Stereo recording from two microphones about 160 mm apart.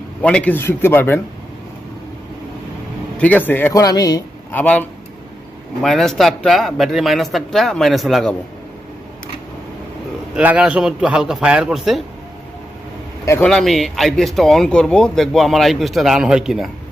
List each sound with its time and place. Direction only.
0.2 s a man's voice: 10° left (ahead or behind)
3.2 s a man's voice: 10° left (ahead or behind)
4.5 s a man's voice: 10° left (ahead or behind)
10.3 s speech: 5° right (ahead or behind)
13.4 s speech: centre (ahead or behind)